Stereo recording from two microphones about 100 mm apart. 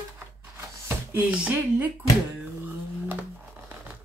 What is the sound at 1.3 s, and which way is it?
Speech, 15° right (ahead or behind).